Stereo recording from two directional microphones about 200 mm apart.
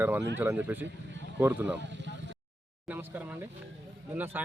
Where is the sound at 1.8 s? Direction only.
60° right (ahead or behind).